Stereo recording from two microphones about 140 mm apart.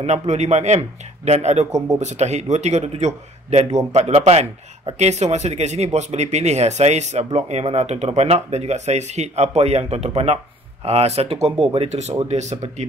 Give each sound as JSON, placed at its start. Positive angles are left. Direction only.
{"t": 0.0, "sound": "speech", "side_deg": -55}